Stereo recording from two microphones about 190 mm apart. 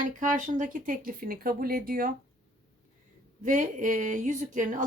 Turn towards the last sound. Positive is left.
turn(degrees=-40)  # may be behind; listen again after turning